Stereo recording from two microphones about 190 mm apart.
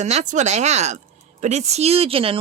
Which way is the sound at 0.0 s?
35° right (ahead or behind).